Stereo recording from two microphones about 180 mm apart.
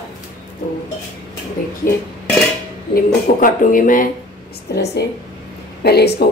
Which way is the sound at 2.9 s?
50° left (ahead or behind).